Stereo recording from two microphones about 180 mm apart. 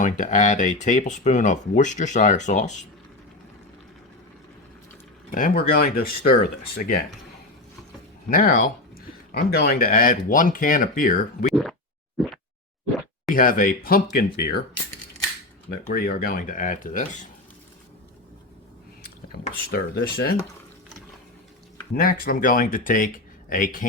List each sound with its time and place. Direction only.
0.0 s speech: 45° left (ahead or behind)
5.3 s speech: 55° left (ahead or behind)
8.3 s speech: 50° left (ahead or behind)
9.3 s speech: 60° left (ahead or behind)
11.4 s speech: centre (ahead or behind)
13.3 s speech: 50° left (ahead or behind)
15.9 s speech: 55° left (ahead or behind)
19.3 s speech: 60° left (ahead or behind)
21.9 s speech: 55° left (ahead or behind)